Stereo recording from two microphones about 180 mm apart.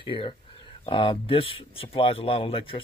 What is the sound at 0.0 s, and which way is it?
Speech, 30° left (ahead or behind).